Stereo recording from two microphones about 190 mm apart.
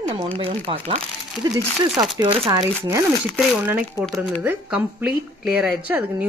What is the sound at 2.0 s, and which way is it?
Speech, 20° right (ahead or behind).